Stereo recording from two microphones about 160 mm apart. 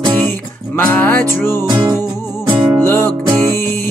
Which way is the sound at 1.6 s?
20° right (ahead or behind).